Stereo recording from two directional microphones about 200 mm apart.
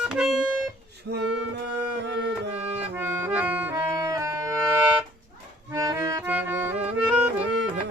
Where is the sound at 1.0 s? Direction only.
65° right (ahead or behind).